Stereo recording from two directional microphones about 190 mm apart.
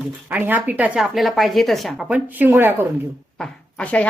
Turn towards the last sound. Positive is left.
turn(degrees=5)  # may be behind; listen again after turning